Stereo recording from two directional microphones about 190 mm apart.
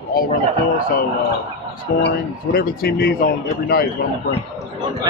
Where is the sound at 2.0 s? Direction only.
55° left (ahead or behind).